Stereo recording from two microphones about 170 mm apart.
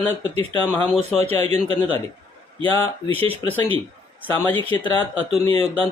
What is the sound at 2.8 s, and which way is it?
Speech, 10° left (ahead or behind).